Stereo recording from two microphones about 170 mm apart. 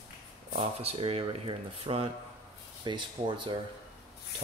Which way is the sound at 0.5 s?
35° right (ahead or behind).